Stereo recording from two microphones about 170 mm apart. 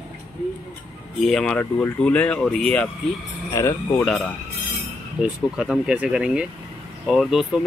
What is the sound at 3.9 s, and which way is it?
Speech, centre (ahead or behind).